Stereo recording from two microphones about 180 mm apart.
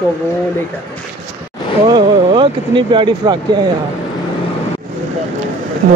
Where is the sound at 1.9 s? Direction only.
25° right (ahead or behind).